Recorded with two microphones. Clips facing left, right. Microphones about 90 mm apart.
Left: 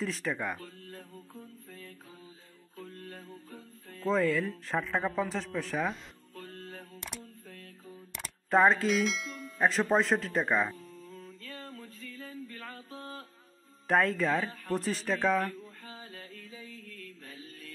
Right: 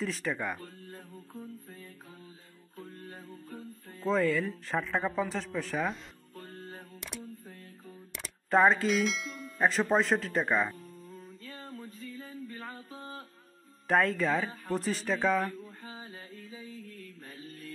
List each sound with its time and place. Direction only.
0.0 s speech: centre (ahead or behind)
0.9 s music: 10° right (ahead or behind)
2.8 s music: 5° right (ahead or behind)
4.0 s speech: centre (ahead or behind)
7.4 s mantra: 20° right (ahead or behind)
7.8 s a sound: centre (ahead or behind)
12.0 s music: 20° right (ahead or behind)
13.8 s speech: centre (ahead or behind)
15.8 s music: 20° right (ahead or behind)